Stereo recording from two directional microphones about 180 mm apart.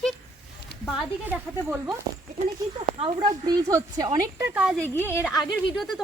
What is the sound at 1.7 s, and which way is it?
Speech, 5° right (ahead or behind).